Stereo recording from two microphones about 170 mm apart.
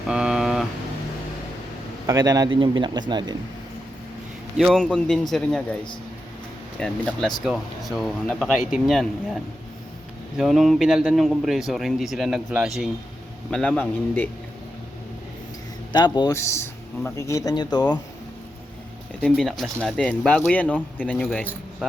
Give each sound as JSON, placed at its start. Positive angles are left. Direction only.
{"t": 0.1, "sound": "a sound", "side_deg": -5}
{"t": 2.0, "sound": "speech", "side_deg": -20}
{"t": 4.5, "sound": "speech", "side_deg": 0}
{"t": 6.7, "sound": "speech", "side_deg": 5}
{"t": 15.9, "sound": "a man's voice", "side_deg": 25}
{"t": 19.2, "sound": "speech", "side_deg": 0}